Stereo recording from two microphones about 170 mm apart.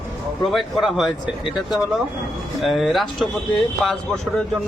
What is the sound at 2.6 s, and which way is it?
Speech, centre (ahead or behind).